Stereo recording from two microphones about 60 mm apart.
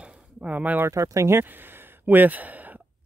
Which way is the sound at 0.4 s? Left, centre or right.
Right.